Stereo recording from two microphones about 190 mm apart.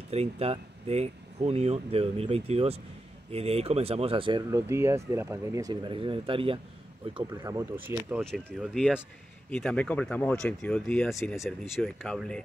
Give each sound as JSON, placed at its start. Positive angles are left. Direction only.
{"t": 0.1, "sound": "speech", "side_deg": -35}
{"t": 7.2, "sound": "speech", "side_deg": -15}
{"t": 8.2, "sound": "speech", "side_deg": 5}